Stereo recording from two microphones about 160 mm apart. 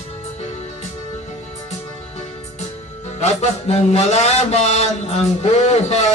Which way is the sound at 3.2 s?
40° left (ahead or behind).